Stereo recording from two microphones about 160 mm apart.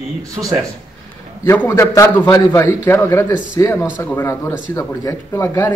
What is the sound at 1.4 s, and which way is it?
Speech, 15° left (ahead or behind).